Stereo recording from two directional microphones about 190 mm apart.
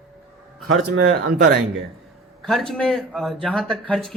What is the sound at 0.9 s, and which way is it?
Speech, 60° right (ahead or behind).